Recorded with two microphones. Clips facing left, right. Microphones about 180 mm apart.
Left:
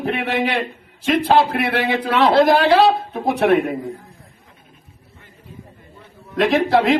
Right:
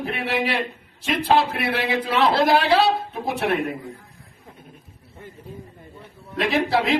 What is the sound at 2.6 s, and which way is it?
Speech, centre (ahead or behind).